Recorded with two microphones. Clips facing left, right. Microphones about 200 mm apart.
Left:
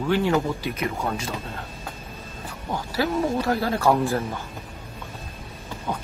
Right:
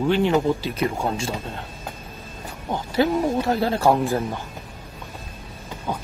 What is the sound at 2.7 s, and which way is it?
Speech, 20° right (ahead or behind).